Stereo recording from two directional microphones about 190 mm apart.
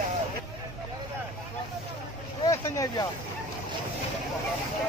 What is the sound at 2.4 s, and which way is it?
Speech, 20° left (ahead or behind).